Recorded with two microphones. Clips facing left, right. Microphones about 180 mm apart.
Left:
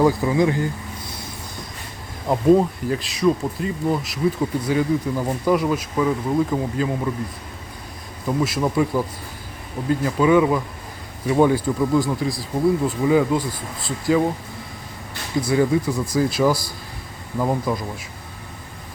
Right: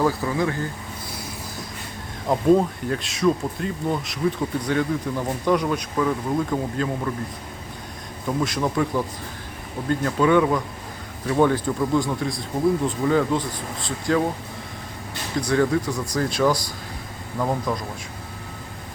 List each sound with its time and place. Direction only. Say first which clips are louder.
0.0 s speech: left 5 dB; 15° left (ahead or behind)
2.2 s speech: left 2 dB; 5° left (ahead or behind)
8.4 s speech: left 3 dB; 5° left (ahead or behind)
15.4 s speech: left 2 dB; 5° left (ahead or behind)